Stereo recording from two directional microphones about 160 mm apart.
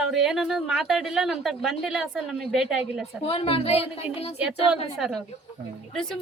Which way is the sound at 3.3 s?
35° left (ahead or behind).